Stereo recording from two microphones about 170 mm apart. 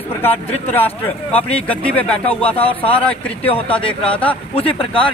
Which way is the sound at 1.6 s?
10° left (ahead or behind).